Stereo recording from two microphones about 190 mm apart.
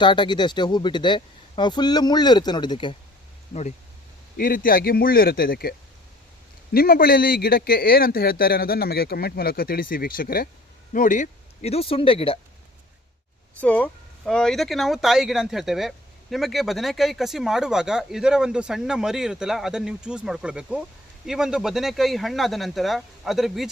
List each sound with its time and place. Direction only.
0.0 s speech: 25° left (ahead or behind)
4.4 s speech: 45° left (ahead or behind)
6.7 s speech: 55° left (ahead or behind); by 12.4 s 30° left (ahead or behind)
13.6 s speech: 10° left (ahead or behind)